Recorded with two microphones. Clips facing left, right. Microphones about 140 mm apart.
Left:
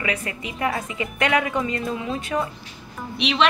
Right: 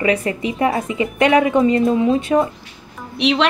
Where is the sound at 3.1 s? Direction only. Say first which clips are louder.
Right 7 dB; 60° right (ahead or behind).